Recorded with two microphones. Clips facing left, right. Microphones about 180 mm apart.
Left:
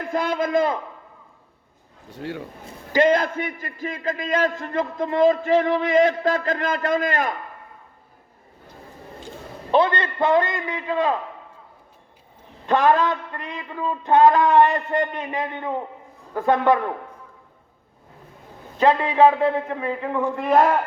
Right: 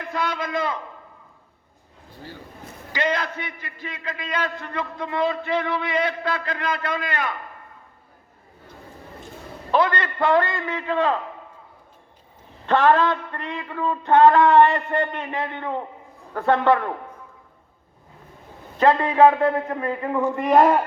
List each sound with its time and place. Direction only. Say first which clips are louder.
0.0 s a man's voice: left 4 dB; 50° left (ahead or behind)
2.1 s speech: left 9 dB; 70° left (ahead or behind)
2.9 s a man's voice: left 7 dB; 45° left (ahead or behind)
9.7 s a man's voice: left 2 dB; 25° left (ahead or behind)
12.6 s a man's voice: even; 15° left (ahead or behind)
18.8 s a man's voice: even; 10° left (ahead or behind)
20.6 s speech: right 2 dB; 15° right (ahead or behind)